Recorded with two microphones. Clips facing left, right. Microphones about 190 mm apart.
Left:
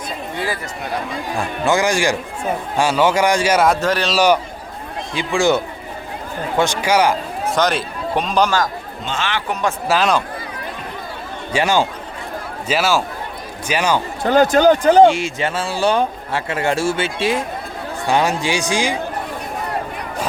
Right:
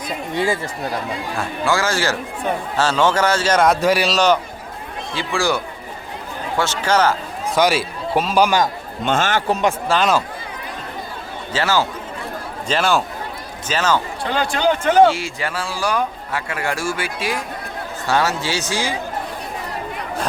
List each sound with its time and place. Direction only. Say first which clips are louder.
0.3 s speech: right 5 dB; 25° right (ahead or behind)
1.4 s a man's voice: left 3 dB; 20° left (ahead or behind)
3.8 s a man's voice: right 2 dB; 10° right (ahead or behind)
4.1 s a man's voice: left 1 dB; 10° left (ahead or behind)
7.5 s a man's voice: right 2 dB; 5° right (ahead or behind)
9.0 s speech: right 5 dB; 50° right (ahead or behind)
9.5 s speech: right 2 dB; 20° right (ahead or behind)
9.9 s speech: left 2 dB; centre (ahead or behind)
11.5 s a man's voice: left 2 dB; 15° left (ahead or behind)
12.6 s a man's voice: left 1 dB; 5° left (ahead or behind)
14.3 s speech: left 8 dB; 45° left (ahead or behind)
15.0 s a man's voice: left 3 dB; 20° left (ahead or behind)